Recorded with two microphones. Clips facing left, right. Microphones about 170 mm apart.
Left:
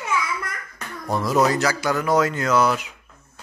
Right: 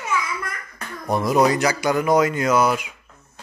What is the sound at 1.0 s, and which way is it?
A man's voice, 15° right (ahead or behind).